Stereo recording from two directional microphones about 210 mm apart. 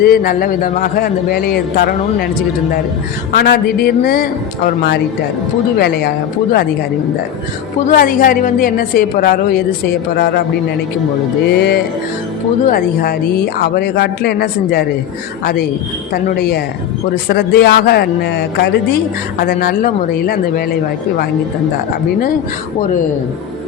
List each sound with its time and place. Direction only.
0.0 s speech: 45° left (ahead or behind)
3.3 s speech: 50° left (ahead or behind)
5.8 s speech: 50° left (ahead or behind)
7.9 s speech: 40° left (ahead or behind)
11.4 s speech: 50° left (ahead or behind)
16.1 s speech: 45° left (ahead or behind)